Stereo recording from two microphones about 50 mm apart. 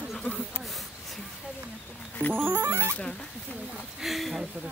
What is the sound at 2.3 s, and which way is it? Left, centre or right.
Speech, right.